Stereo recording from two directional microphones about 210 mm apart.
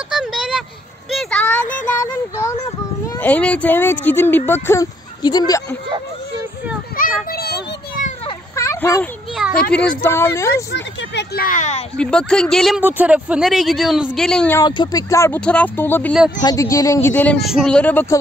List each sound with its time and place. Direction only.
0.1 s a sound: centre (ahead or behind)
1.1 s child singing: 5° left (ahead or behind)
3.2 s speech: 5° left (ahead or behind)
7.0 s children playing: 45° left (ahead or behind)
8.3 s a sound: 15° left (ahead or behind)
9.7 s speech: 5° left (ahead or behind)
10.7 s speech: 50° left (ahead or behind); by 11.8 s 35° left (ahead or behind)
12.0 s speech: 5° left (ahead or behind)
14.6 s speech: 20° left (ahead or behind)